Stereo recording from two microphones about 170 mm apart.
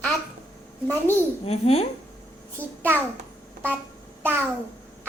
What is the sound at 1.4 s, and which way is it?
Speech, 35° left (ahead or behind).